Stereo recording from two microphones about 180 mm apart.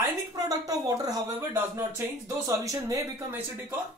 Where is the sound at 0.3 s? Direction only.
20° right (ahead or behind).